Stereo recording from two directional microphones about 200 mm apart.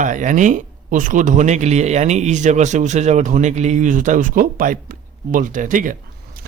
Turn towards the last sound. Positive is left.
turn(degrees=-40)  # may be behind; listen again after turning